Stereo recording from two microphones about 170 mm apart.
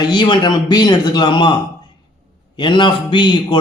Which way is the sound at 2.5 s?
30° left (ahead or behind).